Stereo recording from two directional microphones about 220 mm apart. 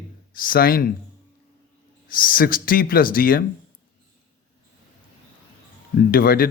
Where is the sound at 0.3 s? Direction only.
40° left (ahead or behind).